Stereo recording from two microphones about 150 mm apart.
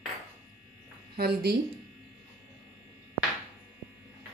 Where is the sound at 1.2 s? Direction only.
90° right.